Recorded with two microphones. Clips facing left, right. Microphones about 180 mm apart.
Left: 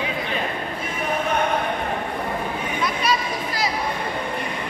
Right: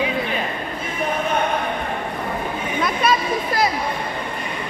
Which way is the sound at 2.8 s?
55° right (ahead or behind).